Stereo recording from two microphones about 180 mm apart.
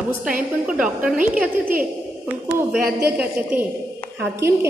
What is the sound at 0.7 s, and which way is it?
A woman's voice, 5° right (ahead or behind).